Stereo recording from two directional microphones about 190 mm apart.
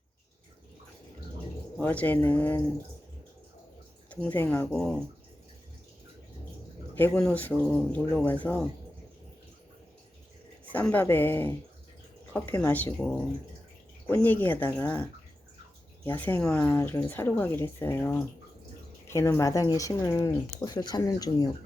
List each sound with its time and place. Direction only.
1.8 s speech: 10° left (ahead or behind)
4.1 s speech: 10° left (ahead or behind)
6.9 s speech: 5° left (ahead or behind)
10.7 s speech: 10° left (ahead or behind)
14.3 s speech: 10° left (ahead or behind)